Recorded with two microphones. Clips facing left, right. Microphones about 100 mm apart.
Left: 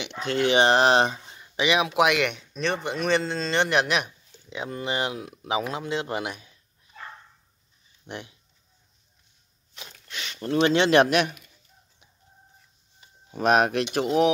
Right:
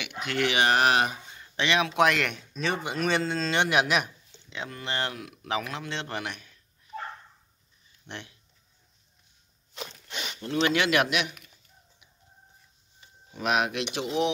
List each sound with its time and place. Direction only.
0.0 s speech: 25° left (ahead or behind)
1.4 s speech: 10° left (ahead or behind)
4.8 s speech: 15° left (ahead or behind)
5.2 s speech: 25° left (ahead or behind)
8.1 s speech: 15° left (ahead or behind)
10.0 s zipper: 15° right (ahead or behind)
10.4 s speech: 35° left (ahead or behind)
13.3 s speech: 40° left (ahead or behind)